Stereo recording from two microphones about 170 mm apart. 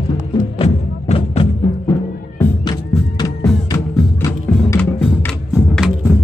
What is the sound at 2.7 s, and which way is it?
Music, 25° left (ahead or behind).